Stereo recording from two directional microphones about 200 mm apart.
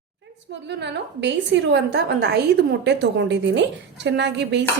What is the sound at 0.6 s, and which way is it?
A woman's voice, 60° right (ahead or behind).